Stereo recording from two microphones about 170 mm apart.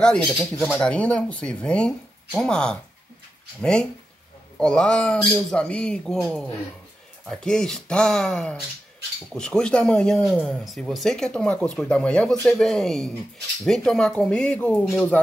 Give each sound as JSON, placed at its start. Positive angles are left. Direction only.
{"t": 0.0, "sound": "speech", "side_deg": 5}
{"t": 4.6, "sound": "speech", "side_deg": 5}